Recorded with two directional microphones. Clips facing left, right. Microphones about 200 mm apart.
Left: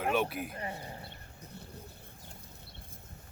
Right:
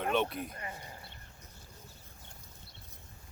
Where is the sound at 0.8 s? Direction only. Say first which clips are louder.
Left 5 dB; 30° left (ahead or behind).